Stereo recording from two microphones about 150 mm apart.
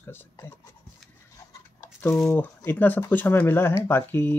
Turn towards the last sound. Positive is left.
turn(degrees=10)  # may be behind; listen again after turning